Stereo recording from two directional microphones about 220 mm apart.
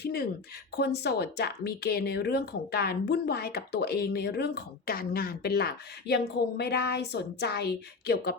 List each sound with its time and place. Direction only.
0.0 s speech: 45° left (ahead or behind)